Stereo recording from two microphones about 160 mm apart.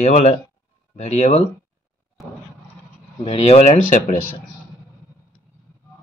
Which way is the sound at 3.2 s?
40° left (ahead or behind).